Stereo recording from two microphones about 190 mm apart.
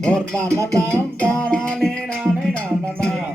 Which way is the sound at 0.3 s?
15° right (ahead or behind).